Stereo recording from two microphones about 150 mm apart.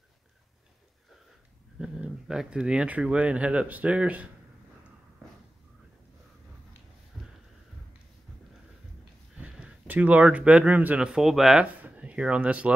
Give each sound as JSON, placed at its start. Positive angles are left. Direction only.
{"t": 1.8, "sound": "speech", "side_deg": -5}
{"t": 7.2, "sound": "a sound", "side_deg": -5}
{"t": 9.4, "sound": "speech", "side_deg": -10}